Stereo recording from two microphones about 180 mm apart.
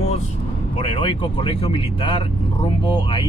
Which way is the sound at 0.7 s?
30° left (ahead or behind).